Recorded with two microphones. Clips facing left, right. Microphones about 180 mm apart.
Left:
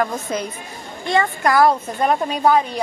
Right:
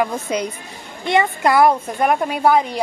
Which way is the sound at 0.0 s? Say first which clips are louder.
Right 2 dB; 15° right (ahead or behind).